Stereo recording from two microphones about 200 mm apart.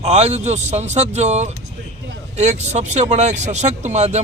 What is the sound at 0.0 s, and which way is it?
Speech, 30° right (ahead or behind).